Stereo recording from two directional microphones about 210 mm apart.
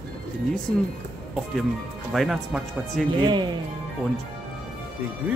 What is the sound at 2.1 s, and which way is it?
Speech, centre (ahead or behind).